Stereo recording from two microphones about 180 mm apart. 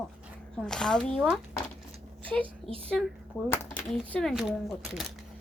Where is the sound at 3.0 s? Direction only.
Centre (ahead or behind).